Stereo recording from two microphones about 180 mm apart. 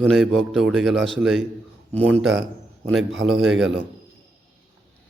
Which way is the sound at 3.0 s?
90° right.